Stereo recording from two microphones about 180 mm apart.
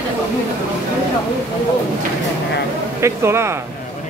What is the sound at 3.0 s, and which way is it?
Speech, 15° right (ahead or behind).